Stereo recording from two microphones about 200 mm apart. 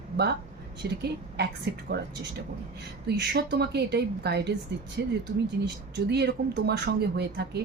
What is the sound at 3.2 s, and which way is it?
Speech, 55° right (ahead or behind).